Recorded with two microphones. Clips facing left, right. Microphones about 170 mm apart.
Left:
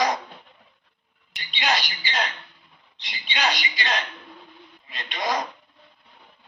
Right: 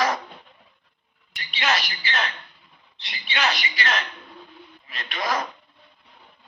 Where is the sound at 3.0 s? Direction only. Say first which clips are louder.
Right 1 dB; 20° left (ahead or behind).